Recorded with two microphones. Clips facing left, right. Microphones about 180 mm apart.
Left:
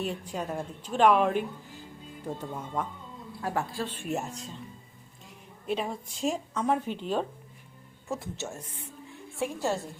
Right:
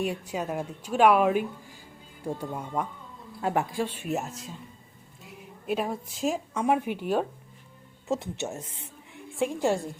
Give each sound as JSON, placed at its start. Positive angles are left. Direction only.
{"t": 0.0, "sound": "a woman's voice", "side_deg": -10}
{"t": 8.0, "sound": "speech", "side_deg": -20}